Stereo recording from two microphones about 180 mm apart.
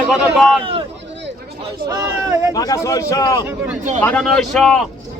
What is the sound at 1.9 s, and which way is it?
Speech, 20° right (ahead or behind).